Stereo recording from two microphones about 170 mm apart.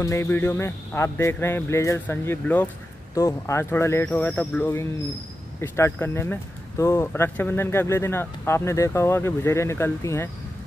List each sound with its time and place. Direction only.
0.0 s speech: 15° left (ahead or behind)